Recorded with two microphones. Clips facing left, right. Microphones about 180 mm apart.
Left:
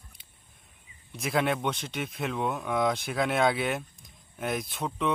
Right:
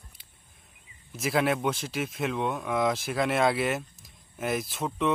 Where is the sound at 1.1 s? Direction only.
Centre (ahead or behind).